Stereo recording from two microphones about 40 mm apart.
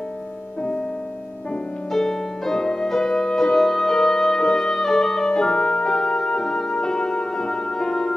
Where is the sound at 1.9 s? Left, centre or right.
Centre.